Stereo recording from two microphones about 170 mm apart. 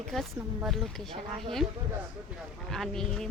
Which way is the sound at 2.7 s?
Centre (ahead or behind).